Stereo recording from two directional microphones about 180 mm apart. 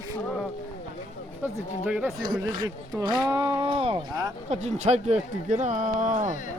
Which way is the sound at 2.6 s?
25° right (ahead or behind).